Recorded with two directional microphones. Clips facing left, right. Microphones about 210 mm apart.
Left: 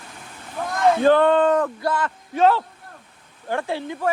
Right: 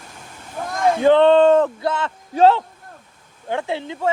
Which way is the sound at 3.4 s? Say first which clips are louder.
Right 1 dB; 20° right (ahead or behind).